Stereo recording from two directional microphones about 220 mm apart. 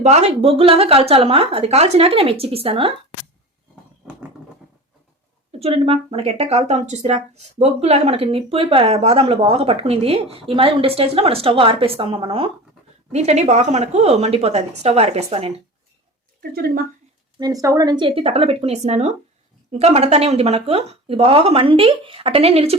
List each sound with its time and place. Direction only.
0.0 s speech: 30° right (ahead or behind)
5.5 s speech: 25° right (ahead or behind)
16.4 s speech: 45° right (ahead or behind)
17.4 s speech: 15° right (ahead or behind)